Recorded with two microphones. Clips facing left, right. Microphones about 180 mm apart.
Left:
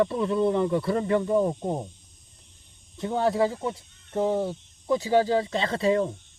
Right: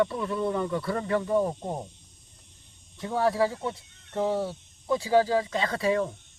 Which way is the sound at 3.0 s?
25° left (ahead or behind).